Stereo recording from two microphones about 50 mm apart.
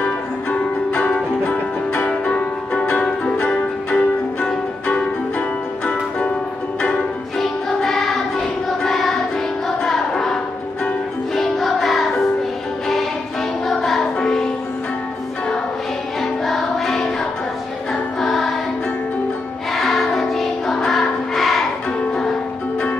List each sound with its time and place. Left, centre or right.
0.0 s music: left
5.9 s music: left
7.3 s music: centre
9.8 s a sound: centre
11.3 s music: centre
13.7 s music: centre
16.2 s music: centre
18.2 s music: centre
19.7 s music: centre